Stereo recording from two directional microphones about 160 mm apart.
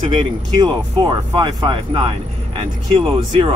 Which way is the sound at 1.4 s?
30° right (ahead or behind).